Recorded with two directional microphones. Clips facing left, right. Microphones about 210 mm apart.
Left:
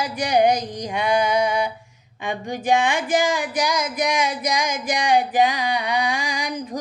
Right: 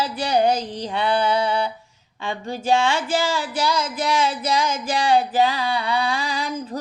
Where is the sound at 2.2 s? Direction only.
15° left (ahead or behind).